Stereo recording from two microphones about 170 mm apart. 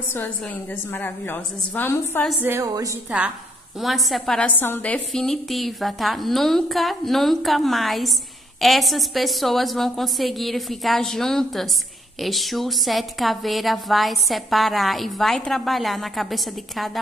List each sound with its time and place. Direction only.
0.9 s a woman's voice: 10° left (ahead or behind)
2.4 s a woman's voice: 20° right (ahead or behind)
3.8 s a woman's voice: centre (ahead or behind)